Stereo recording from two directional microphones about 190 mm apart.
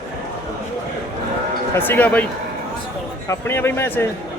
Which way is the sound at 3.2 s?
10° left (ahead or behind).